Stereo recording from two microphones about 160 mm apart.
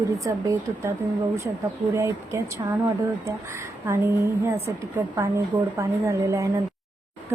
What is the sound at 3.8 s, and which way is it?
A woman's voice, 15° right (ahead or behind).